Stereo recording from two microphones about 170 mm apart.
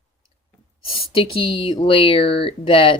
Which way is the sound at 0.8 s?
30° left (ahead or behind).